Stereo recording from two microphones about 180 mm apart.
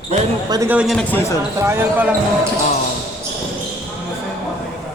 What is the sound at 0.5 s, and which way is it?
Speech, 15° right (ahead or behind).